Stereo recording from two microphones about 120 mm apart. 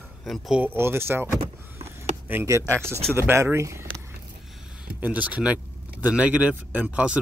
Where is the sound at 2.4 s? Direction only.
25° right (ahead or behind).